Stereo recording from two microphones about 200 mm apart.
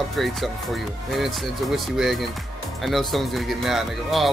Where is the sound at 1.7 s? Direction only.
Centre (ahead or behind).